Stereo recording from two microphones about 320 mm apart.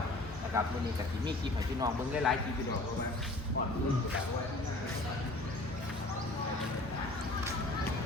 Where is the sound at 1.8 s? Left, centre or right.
Centre.